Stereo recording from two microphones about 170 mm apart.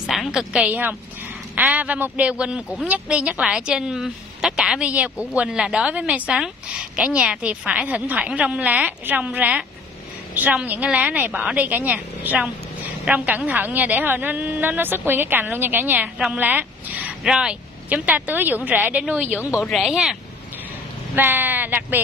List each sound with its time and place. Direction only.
0.0 s a woman's voice: centre (ahead or behind)
19.4 s a woman's voice: 20° left (ahead or behind)
19.7 s speech: centre (ahead or behind)
21.1 s a woman's voice: 10° right (ahead or behind)